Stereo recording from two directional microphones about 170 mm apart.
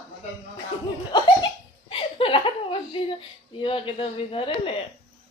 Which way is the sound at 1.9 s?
30° left (ahead or behind).